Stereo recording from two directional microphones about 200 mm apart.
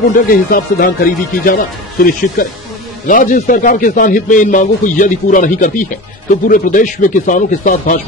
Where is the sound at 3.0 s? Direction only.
40° left (ahead or behind).